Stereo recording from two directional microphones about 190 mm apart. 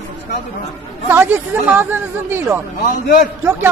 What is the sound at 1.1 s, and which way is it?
Speech, 10° right (ahead or behind).